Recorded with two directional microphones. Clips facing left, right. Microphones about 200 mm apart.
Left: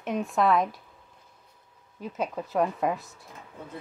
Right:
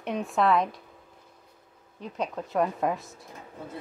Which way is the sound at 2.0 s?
5° left (ahead or behind).